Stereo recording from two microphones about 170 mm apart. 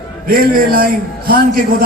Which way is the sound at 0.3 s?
60° right (ahead or behind).